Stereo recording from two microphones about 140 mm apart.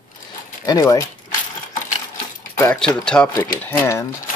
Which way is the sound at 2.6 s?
10° left (ahead or behind).